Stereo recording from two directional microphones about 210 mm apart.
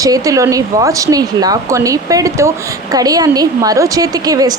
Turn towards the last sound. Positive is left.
turn(degrees=-15)  # may be behind; listen again after turning